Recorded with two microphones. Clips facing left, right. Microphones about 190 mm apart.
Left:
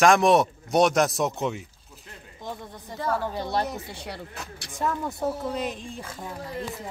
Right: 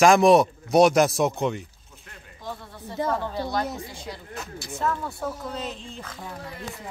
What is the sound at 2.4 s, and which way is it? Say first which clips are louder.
Speech: even; 15° left (ahead or behind).